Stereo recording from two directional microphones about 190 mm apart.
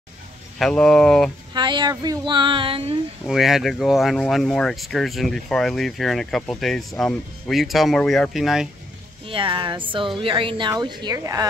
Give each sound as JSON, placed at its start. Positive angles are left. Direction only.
{"t": 0.6, "sound": "speech", "side_deg": 5}
{"t": 1.5, "sound": "speech", "side_deg": -25}
{"t": 3.3, "sound": "speech", "side_deg": 0}
{"t": 9.2, "sound": "speech", "side_deg": -25}